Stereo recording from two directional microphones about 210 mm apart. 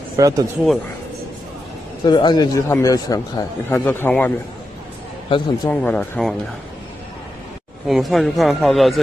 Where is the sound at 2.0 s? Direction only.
20° left (ahead or behind).